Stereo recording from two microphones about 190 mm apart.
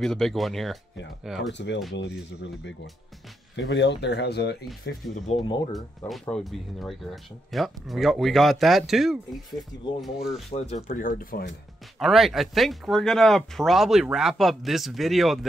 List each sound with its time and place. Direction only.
0.0 s speech: centre (ahead or behind)
1.5 s speech: 70° left (ahead or behind)
5.1 s speech: 40° left (ahead or behind)
5.7 s speech: centre (ahead or behind)
10.5 s speech: 40° left (ahead or behind)
12.0 s speech: centre (ahead or behind)